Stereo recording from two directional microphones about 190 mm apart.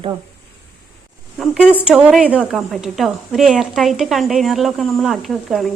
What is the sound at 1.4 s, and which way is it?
A woman's voice, 5° right (ahead or behind).